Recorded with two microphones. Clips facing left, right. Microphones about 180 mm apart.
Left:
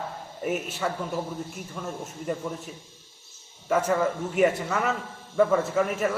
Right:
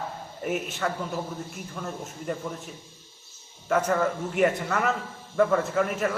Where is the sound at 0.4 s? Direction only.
5° left (ahead or behind).